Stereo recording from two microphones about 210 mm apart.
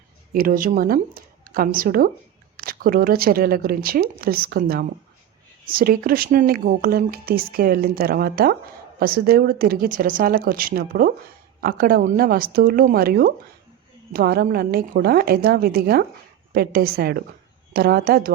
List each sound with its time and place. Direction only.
0.3 s speech: 40° right (ahead or behind)